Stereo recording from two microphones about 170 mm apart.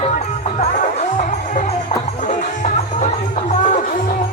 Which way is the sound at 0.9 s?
45° left (ahead or behind).